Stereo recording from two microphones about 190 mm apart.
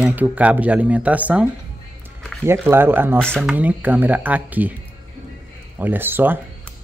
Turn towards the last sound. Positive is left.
turn(degrees=-10)  # may be behind; listen again after turning